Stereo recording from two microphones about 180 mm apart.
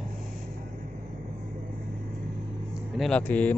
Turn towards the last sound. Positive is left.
turn(degrees=10)  # may be behind; listen again after turning